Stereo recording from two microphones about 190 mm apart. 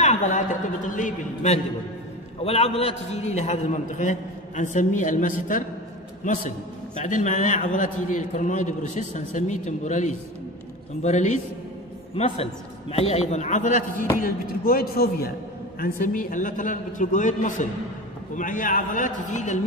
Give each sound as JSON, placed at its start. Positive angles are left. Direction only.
{"t": 0.0, "sound": "a man's voice", "side_deg": 40}
{"t": 7.0, "sound": "a man's voice", "side_deg": 40}
{"t": 12.9, "sound": "a man's voice", "side_deg": 35}
{"t": 14.2, "sound": "a man's voice", "side_deg": 50}